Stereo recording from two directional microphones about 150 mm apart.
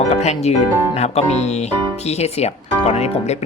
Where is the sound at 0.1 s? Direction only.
45° left (ahead or behind).